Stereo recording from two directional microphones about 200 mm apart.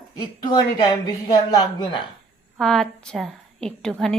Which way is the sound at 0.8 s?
20° left (ahead or behind).